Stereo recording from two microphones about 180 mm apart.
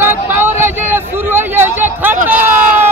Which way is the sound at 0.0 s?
10° right (ahead or behind).